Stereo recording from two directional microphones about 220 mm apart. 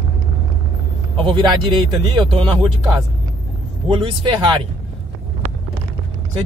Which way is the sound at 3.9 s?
25° right (ahead or behind).